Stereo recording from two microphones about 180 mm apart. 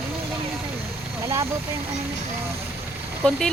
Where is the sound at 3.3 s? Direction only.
5° left (ahead or behind).